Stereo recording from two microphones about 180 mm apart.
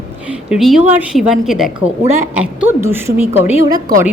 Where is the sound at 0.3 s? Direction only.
Centre (ahead or behind).